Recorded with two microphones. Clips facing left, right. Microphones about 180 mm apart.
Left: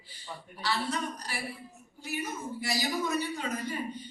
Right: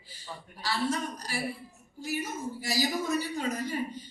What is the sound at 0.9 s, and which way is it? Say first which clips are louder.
Speech: right 2 dB; 40° right (ahead or behind).